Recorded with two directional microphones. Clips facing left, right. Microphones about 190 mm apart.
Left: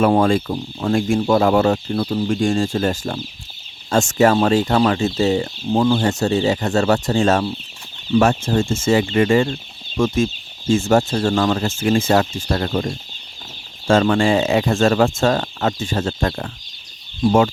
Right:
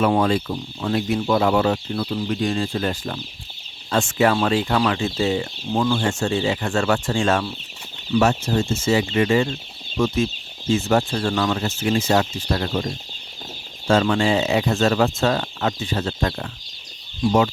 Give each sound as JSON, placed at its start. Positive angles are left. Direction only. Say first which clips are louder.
{"t": 0.0, "sound": "speech", "louder": "left 4 dB", "side_deg": 50}
{"t": 6.0, "sound": "speech", "louder": "left 4 dB", "side_deg": 40}
{"t": 8.1, "sound": "speech", "louder": "left 3 dB", "side_deg": 50}
{"t": 13.8, "sound": "speech", "louder": "left 3 dB", "side_deg": 50}